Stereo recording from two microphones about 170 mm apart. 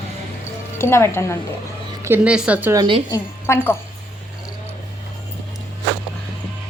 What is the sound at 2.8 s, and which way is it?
Speech, 30° right (ahead or behind).